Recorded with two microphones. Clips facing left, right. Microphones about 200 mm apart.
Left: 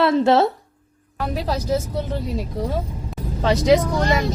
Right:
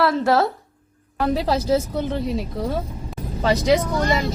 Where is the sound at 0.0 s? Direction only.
20° left (ahead or behind).